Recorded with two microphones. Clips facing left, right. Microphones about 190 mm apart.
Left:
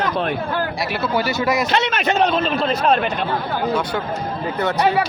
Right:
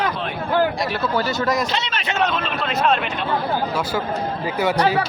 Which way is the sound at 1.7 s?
55° left (ahead or behind).